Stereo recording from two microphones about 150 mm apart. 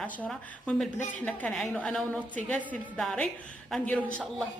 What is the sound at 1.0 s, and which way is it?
Speech, 55° left (ahead or behind).